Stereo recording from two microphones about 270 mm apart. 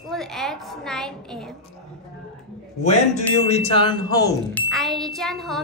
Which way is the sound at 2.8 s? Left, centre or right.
Left.